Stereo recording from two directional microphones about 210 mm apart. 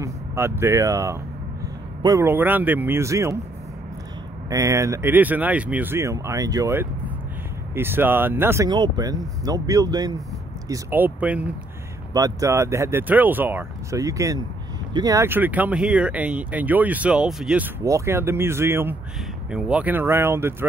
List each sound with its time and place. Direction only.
0.0 s speech: 15° right (ahead or behind)
4.5 s speech: 15° right (ahead or behind)
17.8 s speech: 15° right (ahead or behind)